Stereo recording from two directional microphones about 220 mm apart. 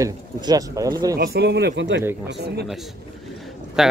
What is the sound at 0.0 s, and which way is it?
Speech, 15° right (ahead or behind).